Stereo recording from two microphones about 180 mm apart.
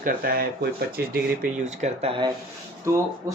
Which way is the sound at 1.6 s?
35° right (ahead or behind).